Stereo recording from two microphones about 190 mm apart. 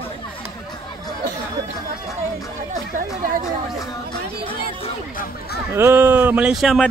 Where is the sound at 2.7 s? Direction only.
45° right (ahead or behind).